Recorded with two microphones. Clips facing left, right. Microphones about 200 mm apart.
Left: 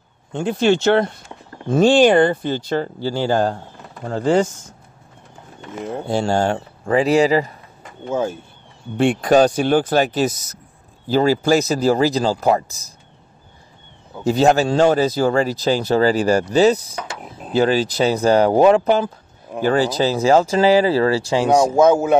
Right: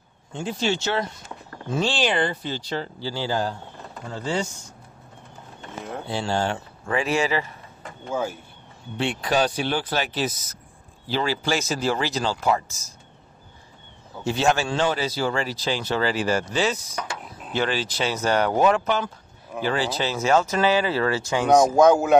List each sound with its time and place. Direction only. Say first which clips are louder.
0.3 s speech: left 9 dB; 60° left (ahead or behind)
6.0 s speech: left 7 dB; 45° left (ahead or behind)
8.1 s speech: left 6 dB; 25° left (ahead or behind)
8.9 s speech: left 9 dB; 50° left (ahead or behind)
14.2 s speech: left 7 dB; 40° left (ahead or behind)
19.6 s speech: left 8 dB; 45° left (ahead or behind)
21.6 s a man's voice: left 2 dB; 5° left (ahead or behind)